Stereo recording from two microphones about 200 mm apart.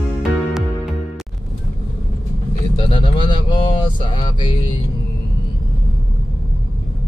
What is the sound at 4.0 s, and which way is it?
Speech, 25° left (ahead or behind).